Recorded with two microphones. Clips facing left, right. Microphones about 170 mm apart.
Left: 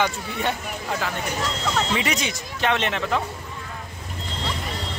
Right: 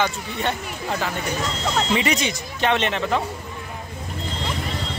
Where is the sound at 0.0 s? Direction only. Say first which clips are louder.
Even; 10° left (ahead or behind).